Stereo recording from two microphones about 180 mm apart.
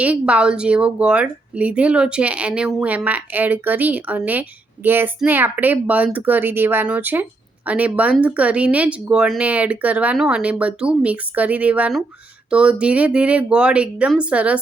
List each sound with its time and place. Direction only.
0.0 s a woman's voice: 5° right (ahead or behind)